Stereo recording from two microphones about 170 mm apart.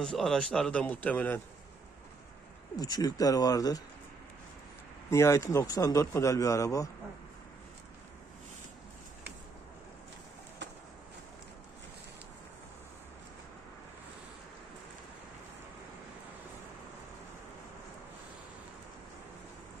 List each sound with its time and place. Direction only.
0.0 s a man's voice: 5° left (ahead or behind)
2.7 s speech: 20° left (ahead or behind)
5.1 s speech: 15° left (ahead or behind)